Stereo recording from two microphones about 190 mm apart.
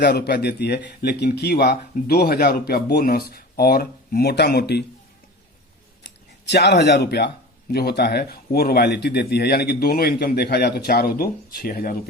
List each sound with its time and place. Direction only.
0.0 s speech: 60° left (ahead or behind)
6.4 s speech: 60° left (ahead or behind)